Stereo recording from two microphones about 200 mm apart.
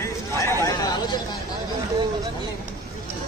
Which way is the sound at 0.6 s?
20° left (ahead or behind).